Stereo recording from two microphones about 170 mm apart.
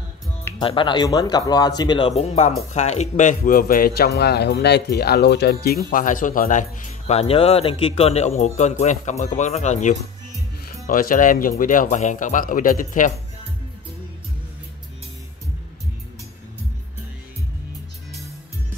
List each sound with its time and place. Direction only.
0.6 s a man's voice: 30° left (ahead or behind); by 13.1 s 50° left (ahead or behind)